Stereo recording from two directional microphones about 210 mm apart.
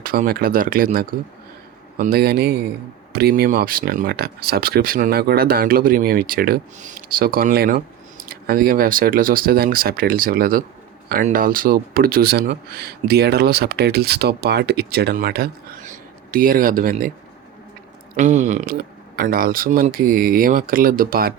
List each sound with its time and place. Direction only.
0.0 s speech: 45° right (ahead or behind)
18.2 s speech: 35° right (ahead or behind)